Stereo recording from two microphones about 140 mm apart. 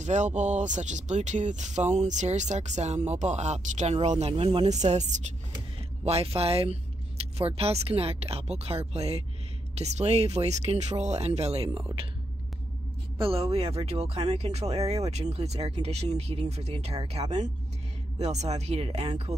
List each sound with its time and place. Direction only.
0.0 s speech: 60° right (ahead or behind)
6.0 s speech: 45° right (ahead or behind)
13.2 s speech: 45° right (ahead or behind)